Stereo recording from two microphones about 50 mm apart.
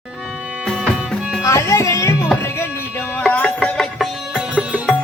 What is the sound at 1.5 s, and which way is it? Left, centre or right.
Music, left.